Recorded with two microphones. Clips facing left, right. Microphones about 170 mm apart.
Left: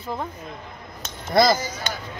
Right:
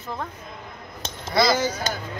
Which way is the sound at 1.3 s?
50° left (ahead or behind).